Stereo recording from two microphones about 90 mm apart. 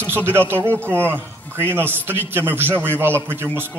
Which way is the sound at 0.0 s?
25° right (ahead or behind).